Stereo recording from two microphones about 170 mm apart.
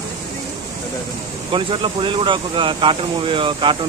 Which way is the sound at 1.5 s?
30° right (ahead or behind).